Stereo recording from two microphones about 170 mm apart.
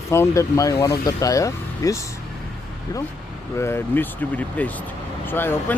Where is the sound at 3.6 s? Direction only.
15° left (ahead or behind).